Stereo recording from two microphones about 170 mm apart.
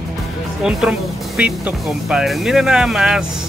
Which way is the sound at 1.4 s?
5° right (ahead or behind).